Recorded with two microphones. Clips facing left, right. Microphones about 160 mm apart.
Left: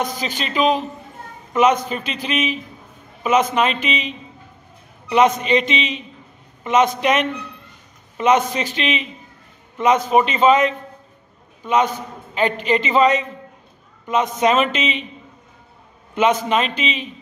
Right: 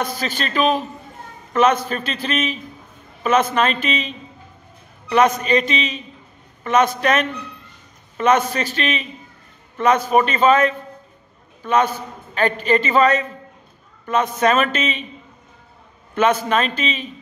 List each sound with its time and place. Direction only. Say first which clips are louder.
0.0 s a man's voice: even; 15° left (ahead or behind)
16.2 s a man's voice: even; 20° left (ahead or behind)